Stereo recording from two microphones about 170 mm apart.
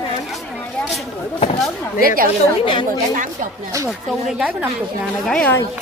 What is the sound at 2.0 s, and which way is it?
Speech, 60° right (ahead or behind).